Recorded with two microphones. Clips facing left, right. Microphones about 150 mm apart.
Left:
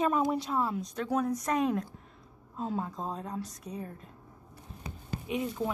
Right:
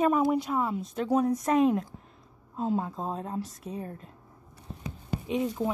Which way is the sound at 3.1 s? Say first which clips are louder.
Right 3 dB; 35° right (ahead or behind).